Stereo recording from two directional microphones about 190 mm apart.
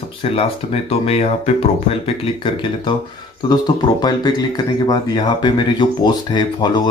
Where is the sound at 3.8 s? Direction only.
25° left (ahead or behind).